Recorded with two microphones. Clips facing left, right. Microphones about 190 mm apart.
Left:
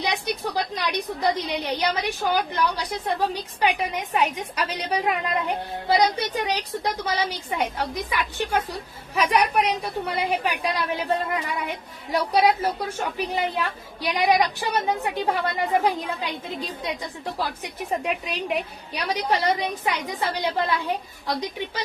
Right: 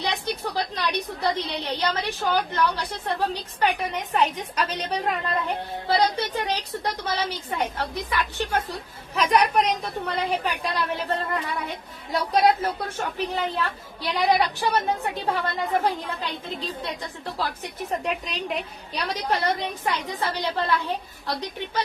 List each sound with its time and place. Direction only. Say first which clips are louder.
0.0 s a woman's voice: left 1 dB; 15° left (ahead or behind)